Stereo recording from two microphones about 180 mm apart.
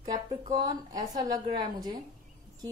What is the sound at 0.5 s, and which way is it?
A woman's voice, 20° right (ahead or behind).